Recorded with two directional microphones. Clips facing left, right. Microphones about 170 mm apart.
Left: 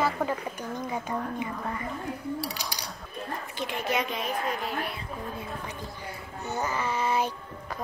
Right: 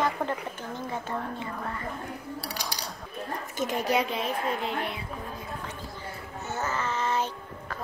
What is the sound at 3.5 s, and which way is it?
A woman's voice, 40° right (ahead or behind).